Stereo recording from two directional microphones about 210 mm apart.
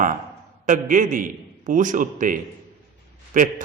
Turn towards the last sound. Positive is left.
turn(degrees=-40)  # may be behind; listen again after turning